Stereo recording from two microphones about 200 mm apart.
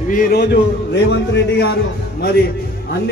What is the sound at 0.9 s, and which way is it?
Speech, 60° left (ahead or behind).